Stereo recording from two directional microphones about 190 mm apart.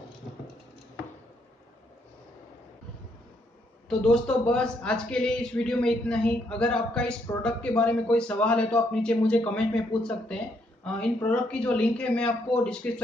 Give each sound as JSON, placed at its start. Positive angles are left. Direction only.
{"t": 3.9, "sound": "a man's voice", "side_deg": 5}